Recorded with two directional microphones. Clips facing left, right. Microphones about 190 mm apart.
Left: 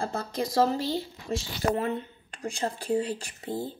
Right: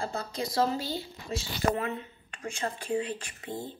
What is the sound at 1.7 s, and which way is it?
Speech, 30° left (ahead or behind).